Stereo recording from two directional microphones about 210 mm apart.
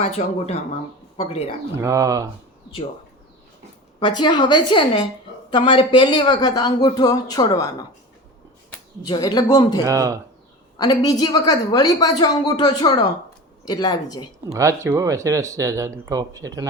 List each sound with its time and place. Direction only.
0.0 s speech: 30° left (ahead or behind)
1.8 s speech: 15° right (ahead or behind)
4.0 s speech: 20° left (ahead or behind)
9.0 s speech: 20° left (ahead or behind)
9.8 s speech: 15° right (ahead or behind)
10.8 s speech: 15° left (ahead or behind)
14.5 s speech: 15° right (ahead or behind)